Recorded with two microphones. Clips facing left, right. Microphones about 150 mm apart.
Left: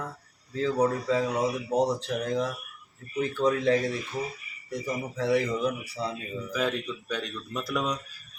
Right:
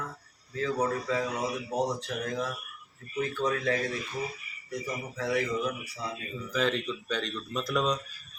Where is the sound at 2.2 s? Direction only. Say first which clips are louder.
Left 4 dB; 30° left (ahead or behind).